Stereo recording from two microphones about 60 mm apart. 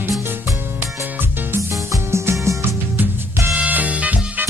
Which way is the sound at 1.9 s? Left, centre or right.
Right.